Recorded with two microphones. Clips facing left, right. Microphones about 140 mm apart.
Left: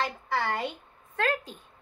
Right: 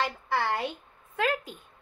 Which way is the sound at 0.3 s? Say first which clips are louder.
Right 1 dB; 10° right (ahead or behind).